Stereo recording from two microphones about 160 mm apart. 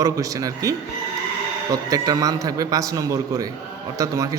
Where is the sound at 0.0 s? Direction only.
20° right (ahead or behind).